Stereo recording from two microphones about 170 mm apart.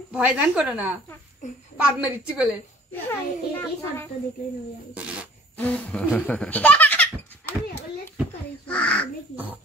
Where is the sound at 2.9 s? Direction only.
10° left (ahead or behind).